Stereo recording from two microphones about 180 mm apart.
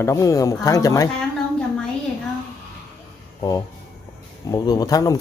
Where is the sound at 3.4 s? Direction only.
20° left (ahead or behind).